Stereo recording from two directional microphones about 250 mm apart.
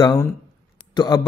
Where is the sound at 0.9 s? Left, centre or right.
Centre.